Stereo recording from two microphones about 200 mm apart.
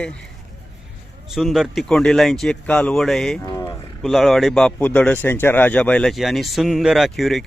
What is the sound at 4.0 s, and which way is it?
Speech, centre (ahead or behind).